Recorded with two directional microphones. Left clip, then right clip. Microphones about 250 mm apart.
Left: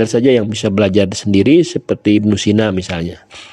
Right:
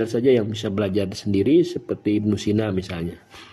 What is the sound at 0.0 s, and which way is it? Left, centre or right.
Speech, left.